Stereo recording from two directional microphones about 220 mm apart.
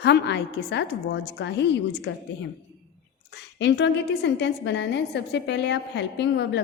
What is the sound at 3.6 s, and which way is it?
A woman's voice, 50° left (ahead or behind).